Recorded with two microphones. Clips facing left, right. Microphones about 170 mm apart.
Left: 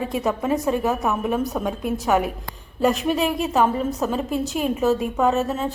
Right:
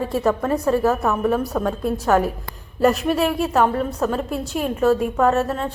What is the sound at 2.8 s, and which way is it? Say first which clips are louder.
A woman's voice: right 2 dB; centre (ahead or behind).